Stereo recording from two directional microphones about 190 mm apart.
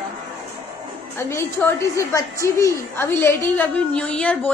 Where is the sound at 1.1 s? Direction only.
15° left (ahead or behind).